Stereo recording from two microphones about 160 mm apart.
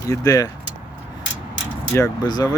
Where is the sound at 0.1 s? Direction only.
20° left (ahead or behind).